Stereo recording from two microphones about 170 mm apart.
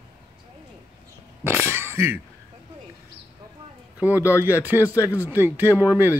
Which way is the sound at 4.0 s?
10° right (ahead or behind).